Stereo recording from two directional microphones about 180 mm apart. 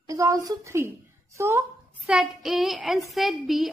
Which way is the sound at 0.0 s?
20° right (ahead or behind).